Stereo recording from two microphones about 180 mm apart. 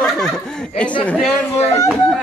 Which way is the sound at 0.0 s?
5° left (ahead or behind).